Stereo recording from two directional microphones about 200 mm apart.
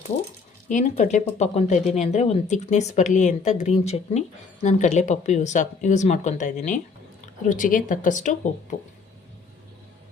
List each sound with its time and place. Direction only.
0.7 s speech: 40° left (ahead or behind)